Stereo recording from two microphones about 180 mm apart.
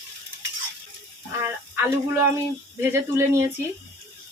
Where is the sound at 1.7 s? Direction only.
15° right (ahead or behind).